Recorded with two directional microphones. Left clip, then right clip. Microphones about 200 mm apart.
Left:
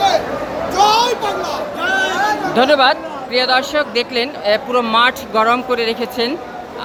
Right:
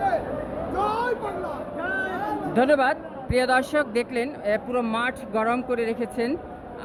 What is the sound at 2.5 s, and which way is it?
Speech, 10° right (ahead or behind).